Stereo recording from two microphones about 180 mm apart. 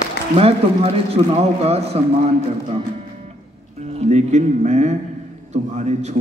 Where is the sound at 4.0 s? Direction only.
40° right (ahead or behind).